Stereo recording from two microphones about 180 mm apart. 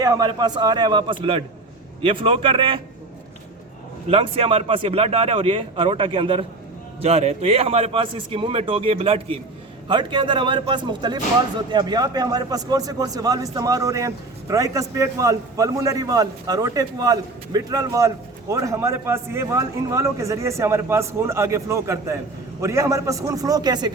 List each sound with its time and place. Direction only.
0.0 s speech: 20° right (ahead or behind)
4.1 s a man's voice: 30° right (ahead or behind)